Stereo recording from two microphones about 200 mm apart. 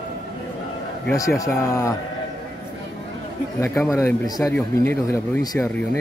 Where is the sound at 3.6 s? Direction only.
15° left (ahead or behind).